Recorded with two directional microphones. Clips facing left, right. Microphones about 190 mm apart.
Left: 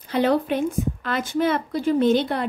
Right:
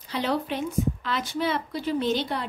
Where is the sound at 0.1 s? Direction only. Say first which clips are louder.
Left 7 dB; 50° left (ahead or behind).